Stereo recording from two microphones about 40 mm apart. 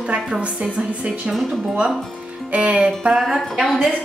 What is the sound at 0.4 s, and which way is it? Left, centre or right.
Speech, right.